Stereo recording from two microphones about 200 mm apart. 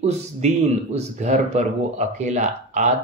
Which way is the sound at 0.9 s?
35° right (ahead or behind).